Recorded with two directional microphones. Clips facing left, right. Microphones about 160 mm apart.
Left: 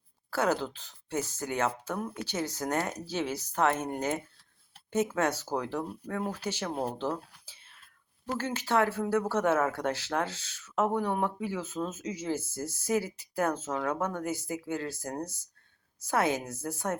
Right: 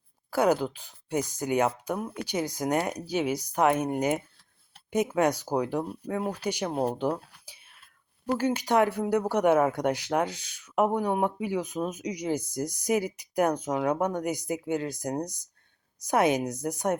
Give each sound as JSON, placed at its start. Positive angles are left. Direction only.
{"t": 0.3, "sound": "speech", "side_deg": -15}
{"t": 7.4, "sound": "whispering", "side_deg": -10}
{"t": 8.4, "sound": "speech", "side_deg": -15}